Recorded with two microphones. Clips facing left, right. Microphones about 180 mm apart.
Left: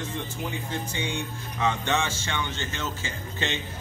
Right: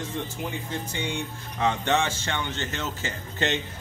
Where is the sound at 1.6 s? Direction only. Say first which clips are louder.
Right 2 dB; 35° right (ahead or behind).